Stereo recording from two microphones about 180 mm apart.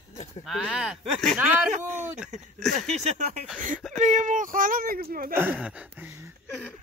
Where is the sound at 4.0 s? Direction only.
45° right (ahead or behind).